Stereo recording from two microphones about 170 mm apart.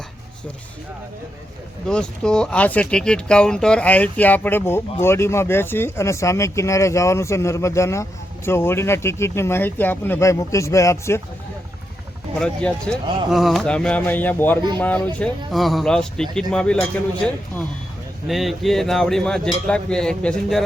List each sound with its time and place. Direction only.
1.9 s speech: 5° left (ahead or behind)
12.4 s speech: 5° left (ahead or behind)